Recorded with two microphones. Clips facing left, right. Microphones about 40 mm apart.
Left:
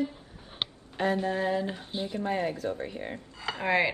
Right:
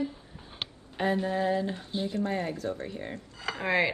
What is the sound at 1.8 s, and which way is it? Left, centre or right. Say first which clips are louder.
Speech: right 2 dB; left.